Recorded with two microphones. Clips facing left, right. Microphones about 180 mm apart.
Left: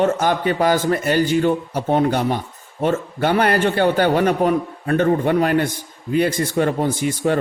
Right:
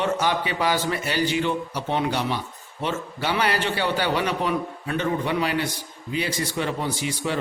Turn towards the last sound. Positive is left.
turn(degrees=50)  # may be behind; listen again after turning